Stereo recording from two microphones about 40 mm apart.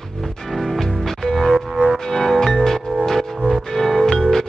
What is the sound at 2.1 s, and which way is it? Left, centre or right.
Music, centre.